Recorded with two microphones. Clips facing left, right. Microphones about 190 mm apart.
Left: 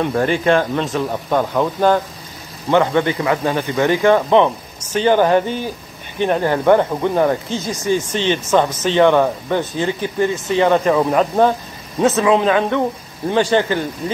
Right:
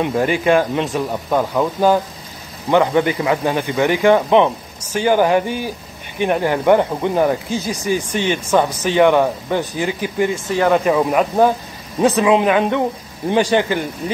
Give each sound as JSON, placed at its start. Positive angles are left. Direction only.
{"t": 0.0, "sound": "speech", "side_deg": -15}
{"t": 1.1, "sound": "speech", "side_deg": -5}